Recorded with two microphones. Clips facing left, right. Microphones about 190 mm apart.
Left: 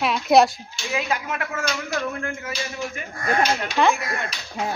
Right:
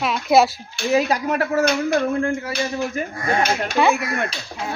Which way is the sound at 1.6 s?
60° right (ahead or behind).